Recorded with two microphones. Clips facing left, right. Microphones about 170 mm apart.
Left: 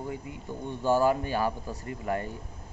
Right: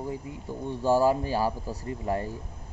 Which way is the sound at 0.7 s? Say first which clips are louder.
Right 2 dB; 30° right (ahead or behind).